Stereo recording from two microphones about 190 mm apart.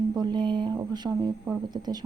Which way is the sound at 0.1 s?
20° right (ahead or behind).